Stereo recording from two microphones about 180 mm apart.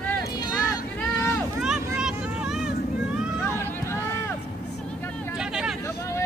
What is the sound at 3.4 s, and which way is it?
Vehicle, 15° left (ahead or behind).